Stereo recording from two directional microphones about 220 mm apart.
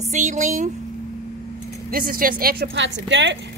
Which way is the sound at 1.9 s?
40° right (ahead or behind).